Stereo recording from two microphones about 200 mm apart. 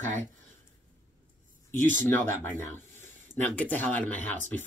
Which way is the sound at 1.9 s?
10° left (ahead or behind).